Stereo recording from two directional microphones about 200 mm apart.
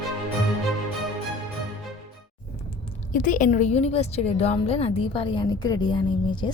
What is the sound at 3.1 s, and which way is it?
A woman's voice, 40° left (ahead or behind).